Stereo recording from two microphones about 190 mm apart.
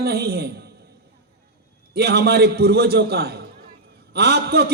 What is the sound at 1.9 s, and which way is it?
A man's voice, 60° right (ahead or behind).